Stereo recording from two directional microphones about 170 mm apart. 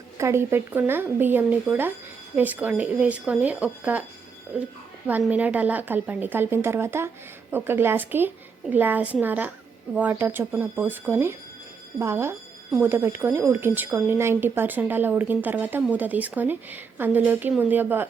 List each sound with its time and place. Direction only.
0.2 s a woman's voice: 15° right (ahead or behind)